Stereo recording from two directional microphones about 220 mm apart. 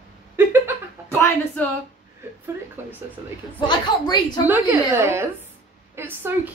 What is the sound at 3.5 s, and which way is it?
Speech, 20° left (ahead or behind).